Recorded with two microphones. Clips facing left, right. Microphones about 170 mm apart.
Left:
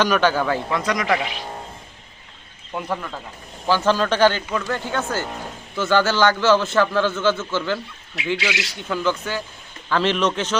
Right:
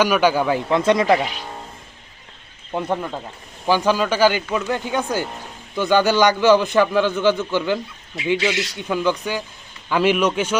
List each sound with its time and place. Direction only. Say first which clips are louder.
0.0 s a man's voice: right 2 dB; 10° right (ahead or behind)
0.8 s speech: right 6 dB; 25° right (ahead or behind)
2.7 s a man's voice: right 4 dB; 25° right (ahead or behind)